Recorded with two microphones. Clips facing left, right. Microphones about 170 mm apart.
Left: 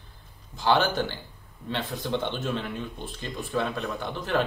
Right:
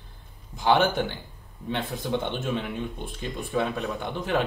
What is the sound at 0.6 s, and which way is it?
Speech, 15° right (ahead or behind).